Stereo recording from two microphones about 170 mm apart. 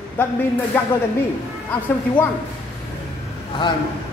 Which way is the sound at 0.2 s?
10° left (ahead or behind).